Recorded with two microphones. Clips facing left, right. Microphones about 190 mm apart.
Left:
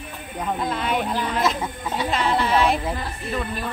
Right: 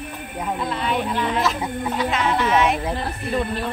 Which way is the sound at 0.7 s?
45° left (ahead or behind).